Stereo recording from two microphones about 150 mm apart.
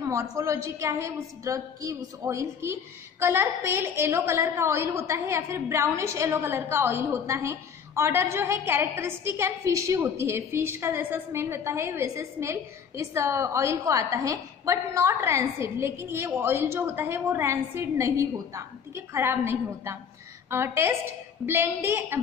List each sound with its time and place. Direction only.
0.0 s a woman's voice: 20° right (ahead or behind)